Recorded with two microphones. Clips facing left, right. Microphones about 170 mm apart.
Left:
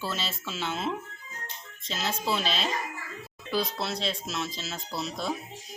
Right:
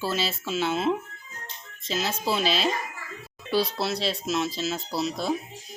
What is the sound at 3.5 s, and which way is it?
Speech, 35° right (ahead or behind).